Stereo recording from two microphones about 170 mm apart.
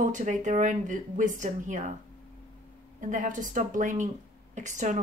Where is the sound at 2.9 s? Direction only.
50° right (ahead or behind).